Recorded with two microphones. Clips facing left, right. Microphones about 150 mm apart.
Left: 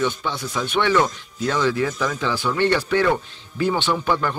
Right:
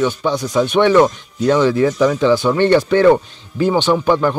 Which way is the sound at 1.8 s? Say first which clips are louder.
Right 10 dB; 35° right (ahead or behind).